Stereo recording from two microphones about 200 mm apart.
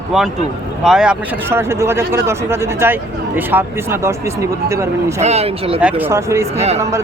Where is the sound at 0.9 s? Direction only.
5° right (ahead or behind).